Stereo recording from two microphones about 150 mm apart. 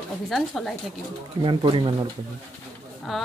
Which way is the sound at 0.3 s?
Centre (ahead or behind).